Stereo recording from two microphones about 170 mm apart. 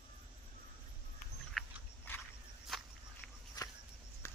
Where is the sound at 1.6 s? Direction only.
5° left (ahead or behind).